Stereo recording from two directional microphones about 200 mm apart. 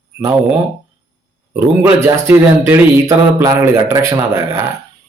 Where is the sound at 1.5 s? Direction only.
10° right (ahead or behind).